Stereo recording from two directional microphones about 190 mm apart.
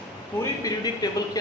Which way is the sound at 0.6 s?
20° left (ahead or behind).